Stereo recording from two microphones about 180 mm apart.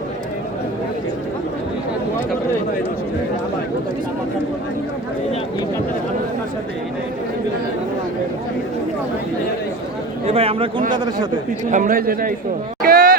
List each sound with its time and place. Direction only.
10.2 s a man's voice: 35° right (ahead or behind)
11.7 s a man's voice: 50° right (ahead or behind)
12.8 s a sound: 55° right (ahead or behind)